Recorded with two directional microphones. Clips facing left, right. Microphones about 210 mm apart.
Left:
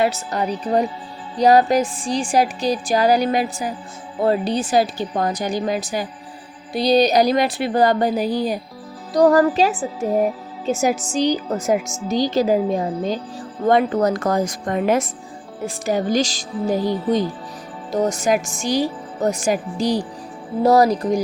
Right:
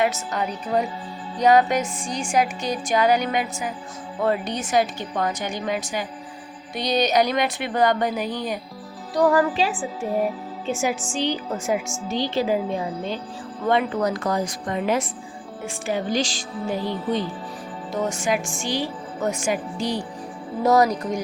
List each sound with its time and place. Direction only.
0.0 s a woman's voice: 35° left (ahead or behind)